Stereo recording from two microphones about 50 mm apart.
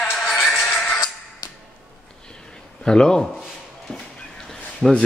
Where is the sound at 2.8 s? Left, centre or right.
Centre.